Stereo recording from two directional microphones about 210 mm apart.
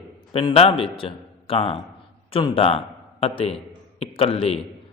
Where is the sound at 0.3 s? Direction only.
30° left (ahead or behind).